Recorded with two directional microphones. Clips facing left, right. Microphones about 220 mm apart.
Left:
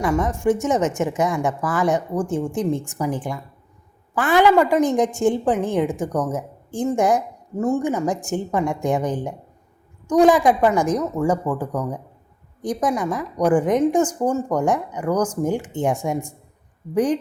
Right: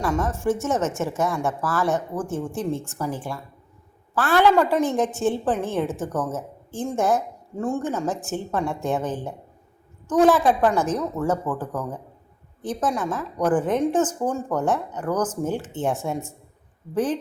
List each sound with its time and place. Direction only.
0.0 s a woman's voice: 15° left (ahead or behind)